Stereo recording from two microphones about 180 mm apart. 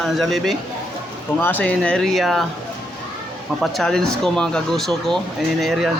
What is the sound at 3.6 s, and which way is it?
Speech, centre (ahead or behind).